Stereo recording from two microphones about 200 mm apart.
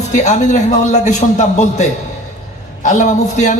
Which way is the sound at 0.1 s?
35° left (ahead or behind).